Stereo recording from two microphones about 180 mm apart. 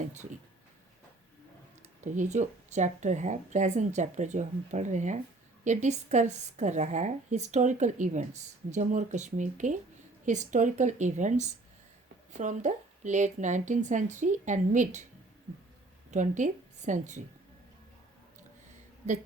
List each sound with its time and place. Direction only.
2.0 s a woman's voice: 40° right (ahead or behind)
16.1 s a woman's voice: 45° right (ahead or behind)